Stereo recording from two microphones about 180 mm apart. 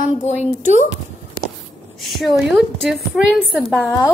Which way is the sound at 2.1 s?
Centre (ahead or behind).